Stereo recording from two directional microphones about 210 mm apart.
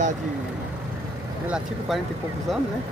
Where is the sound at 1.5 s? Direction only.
Centre (ahead or behind).